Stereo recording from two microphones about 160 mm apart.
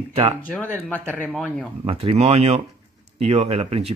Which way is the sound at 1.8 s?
40° right (ahead or behind).